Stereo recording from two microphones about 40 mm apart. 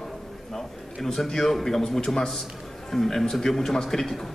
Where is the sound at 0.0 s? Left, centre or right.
Centre.